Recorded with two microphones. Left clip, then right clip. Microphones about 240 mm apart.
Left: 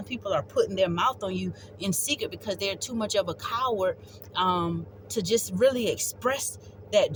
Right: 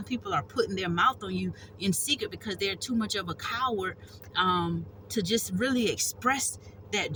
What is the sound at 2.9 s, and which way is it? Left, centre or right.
A woman's voice, left.